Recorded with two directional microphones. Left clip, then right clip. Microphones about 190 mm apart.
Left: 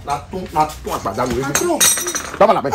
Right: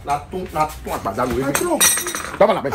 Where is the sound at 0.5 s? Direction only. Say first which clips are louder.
Left 4 dB; 10° left (ahead or behind).